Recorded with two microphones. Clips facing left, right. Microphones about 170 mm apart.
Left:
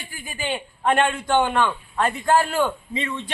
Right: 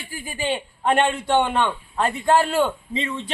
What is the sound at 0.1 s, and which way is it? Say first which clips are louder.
A man's voice: right 3 dB; 30° right (ahead or behind).